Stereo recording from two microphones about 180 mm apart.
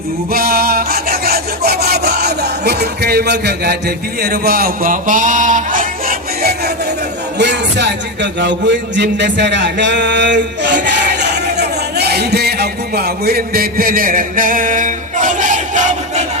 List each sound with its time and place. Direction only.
0.3 s rub: 55° right (ahead or behind)
7.3 s a man's voice: 70° right (ahead or behind); by 16.2 s 45° right (ahead or behind)